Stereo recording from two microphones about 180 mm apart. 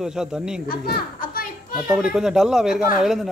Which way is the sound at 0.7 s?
55° left (ahead or behind).